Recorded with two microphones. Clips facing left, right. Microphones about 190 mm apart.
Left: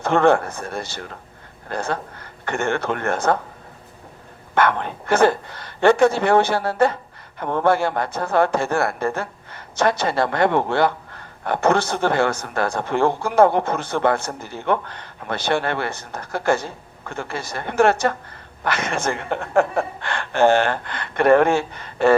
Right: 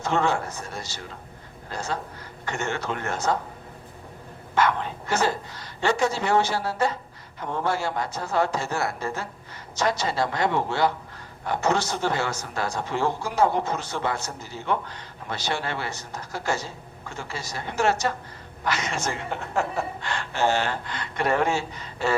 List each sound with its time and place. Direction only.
0.0 s speech: 55° left (ahead or behind)
4.5 s speech: 60° left (ahead or behind)